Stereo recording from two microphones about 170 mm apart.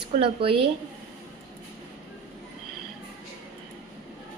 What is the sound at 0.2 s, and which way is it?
Speech, 30° right (ahead or behind).